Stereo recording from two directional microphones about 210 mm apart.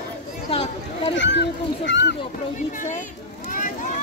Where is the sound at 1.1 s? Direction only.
60° left (ahead or behind).